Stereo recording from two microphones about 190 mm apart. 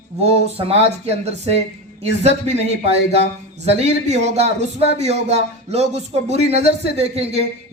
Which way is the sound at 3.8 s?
35° right (ahead or behind).